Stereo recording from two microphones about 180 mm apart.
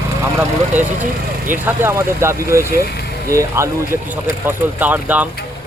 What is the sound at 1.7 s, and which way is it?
A man's voice, 15° right (ahead or behind).